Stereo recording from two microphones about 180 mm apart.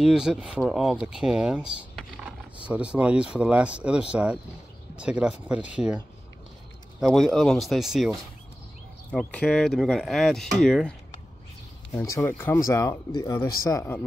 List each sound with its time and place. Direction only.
0.0 s speech: 5° right (ahead or behind)
7.0 s speech: centre (ahead or behind)
11.9 s speech: 15° left (ahead or behind)